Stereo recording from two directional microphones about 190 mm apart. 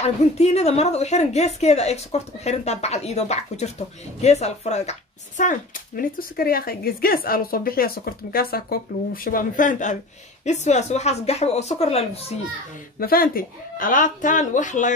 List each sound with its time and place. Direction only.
0.0 s a woman's voice: 35° left (ahead or behind)
13.0 s speech: 50° left (ahead or behind)